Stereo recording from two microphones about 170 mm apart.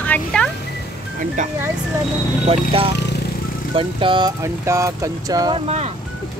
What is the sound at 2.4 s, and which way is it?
Speech, 35° right (ahead or behind).